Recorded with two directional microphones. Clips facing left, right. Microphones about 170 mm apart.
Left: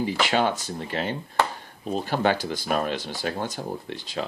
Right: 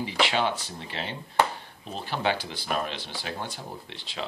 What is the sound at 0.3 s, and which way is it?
Speech, 45° left (ahead or behind).